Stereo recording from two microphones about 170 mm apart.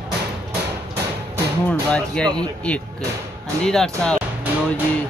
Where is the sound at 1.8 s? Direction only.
5° left (ahead or behind).